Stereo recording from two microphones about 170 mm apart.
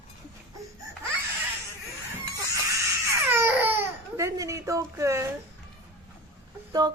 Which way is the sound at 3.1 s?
15° right (ahead or behind).